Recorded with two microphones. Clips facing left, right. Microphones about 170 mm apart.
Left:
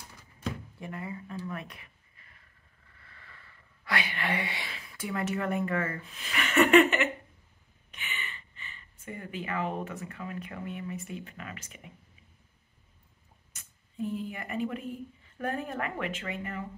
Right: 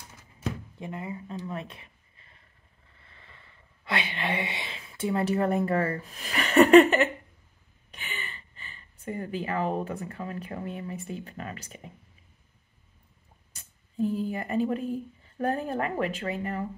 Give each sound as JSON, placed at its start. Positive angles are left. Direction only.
{"t": 0.7, "sound": "speech", "side_deg": -20}
{"t": 13.5, "sound": "a sound", "side_deg": -35}
{"t": 15.3, "sound": "speech", "side_deg": -35}